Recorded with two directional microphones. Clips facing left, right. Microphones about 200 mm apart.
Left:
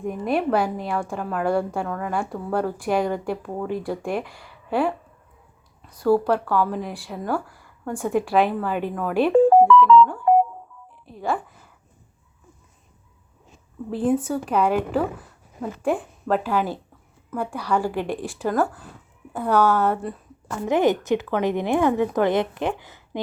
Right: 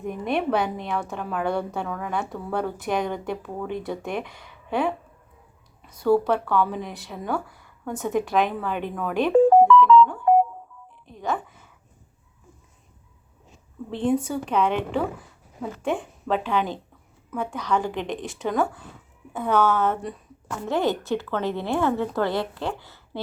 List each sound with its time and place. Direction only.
0.0 s a woman's voice: 5° left (ahead or behind)
6.0 s speech: 5° left (ahead or behind)
9.7 s music: 5° left (ahead or behind)
11.0 s telephone dialing: 5° left (ahead or behind)
13.9 s a woman's voice: 5° left (ahead or behind)
20.7 s speech: 15° left (ahead or behind)